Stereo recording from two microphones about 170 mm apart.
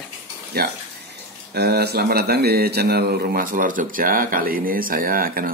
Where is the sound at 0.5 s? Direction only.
70° right (ahead or behind).